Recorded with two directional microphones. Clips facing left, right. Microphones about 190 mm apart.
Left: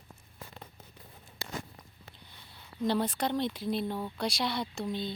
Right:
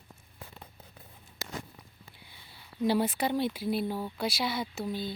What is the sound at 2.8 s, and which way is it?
Speech, 5° right (ahead or behind).